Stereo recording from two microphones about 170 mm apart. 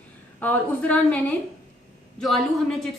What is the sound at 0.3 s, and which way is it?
Speech, 10° left (ahead or behind).